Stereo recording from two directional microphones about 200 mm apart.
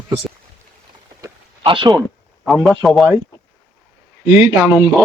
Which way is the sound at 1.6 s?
25° right (ahead or behind).